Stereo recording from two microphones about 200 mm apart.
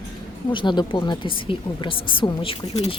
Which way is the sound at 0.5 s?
20° left (ahead or behind).